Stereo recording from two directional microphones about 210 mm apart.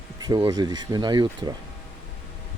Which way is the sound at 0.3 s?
20° right (ahead or behind).